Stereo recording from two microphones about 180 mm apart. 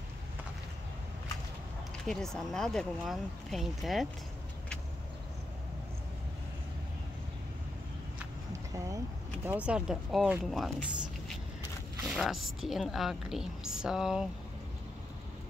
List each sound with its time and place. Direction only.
2.0 s speech: 5° left (ahead or behind)
8.7 s vehicle: 20° right (ahead or behind)
9.5 s speech: 5° right (ahead or behind)